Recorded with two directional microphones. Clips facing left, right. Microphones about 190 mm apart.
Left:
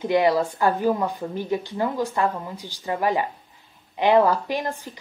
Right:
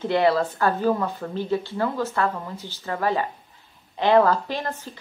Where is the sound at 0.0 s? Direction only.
15° left (ahead or behind).